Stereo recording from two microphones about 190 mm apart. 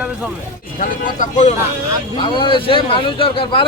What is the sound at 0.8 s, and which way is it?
Speech, 45° left (ahead or behind).